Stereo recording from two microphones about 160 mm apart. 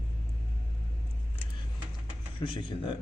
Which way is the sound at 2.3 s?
30° left (ahead or behind).